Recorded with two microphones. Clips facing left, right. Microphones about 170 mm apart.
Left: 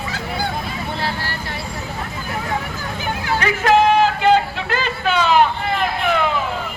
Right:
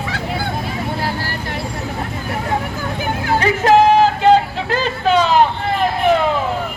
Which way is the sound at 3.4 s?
35° right (ahead or behind).